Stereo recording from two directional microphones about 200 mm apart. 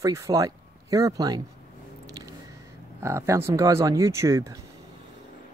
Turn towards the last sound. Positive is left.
turn(degrees=-15)  # may be behind; listen again after turning